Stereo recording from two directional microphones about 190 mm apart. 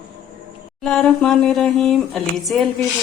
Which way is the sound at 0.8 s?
5° left (ahead or behind).